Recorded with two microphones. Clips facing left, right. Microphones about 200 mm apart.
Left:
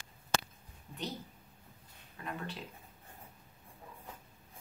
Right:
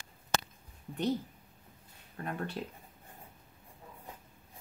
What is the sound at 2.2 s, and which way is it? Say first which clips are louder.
Speech: right 4 dB; 45° right (ahead or behind).